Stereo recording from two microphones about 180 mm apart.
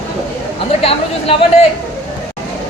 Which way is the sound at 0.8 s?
30° left (ahead or behind).